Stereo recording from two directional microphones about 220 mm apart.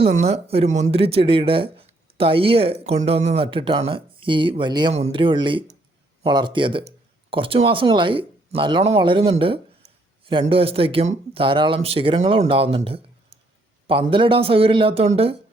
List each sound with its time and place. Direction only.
0.0 s speech: 30° right (ahead or behind)